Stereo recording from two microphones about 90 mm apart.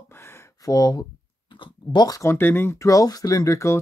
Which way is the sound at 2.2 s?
25° left (ahead or behind).